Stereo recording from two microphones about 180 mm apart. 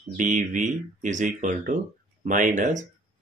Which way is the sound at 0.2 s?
45° right (ahead or behind).